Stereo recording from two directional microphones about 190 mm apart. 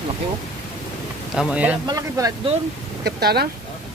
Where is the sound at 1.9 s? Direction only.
20° right (ahead or behind).